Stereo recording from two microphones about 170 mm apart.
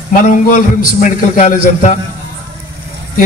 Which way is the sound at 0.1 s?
55° left (ahead or behind).